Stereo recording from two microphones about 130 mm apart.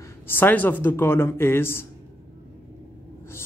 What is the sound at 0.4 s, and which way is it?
Speech, 15° left (ahead or behind).